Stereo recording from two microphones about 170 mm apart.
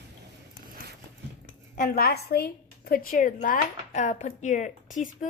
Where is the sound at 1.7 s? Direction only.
55° left (ahead or behind).